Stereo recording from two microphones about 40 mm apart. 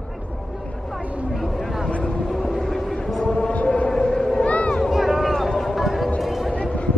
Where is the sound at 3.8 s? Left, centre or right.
Centre; by 4.8 s left.